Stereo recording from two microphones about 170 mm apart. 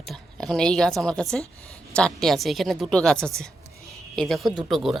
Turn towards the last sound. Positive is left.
turn(degrees=0)  # may be behind; listen again after turning